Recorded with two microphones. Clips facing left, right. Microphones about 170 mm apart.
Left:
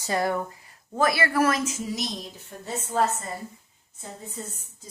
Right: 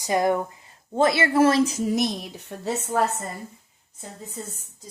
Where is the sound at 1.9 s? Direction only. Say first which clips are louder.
Right 7 dB; 55° right (ahead or behind).